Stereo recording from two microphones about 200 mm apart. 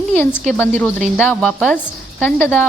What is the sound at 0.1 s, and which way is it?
Speech, 10° left (ahead or behind).